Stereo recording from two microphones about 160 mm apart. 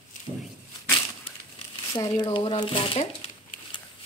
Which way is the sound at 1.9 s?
25° left (ahead or behind).